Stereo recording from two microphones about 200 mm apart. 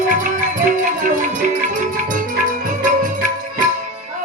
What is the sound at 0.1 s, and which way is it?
Music, 40° right (ahead or behind).